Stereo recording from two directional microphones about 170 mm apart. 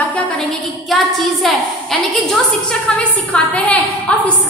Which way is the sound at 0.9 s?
Centre (ahead or behind).